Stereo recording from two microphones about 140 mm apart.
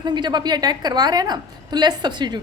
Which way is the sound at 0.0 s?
30° right (ahead or behind).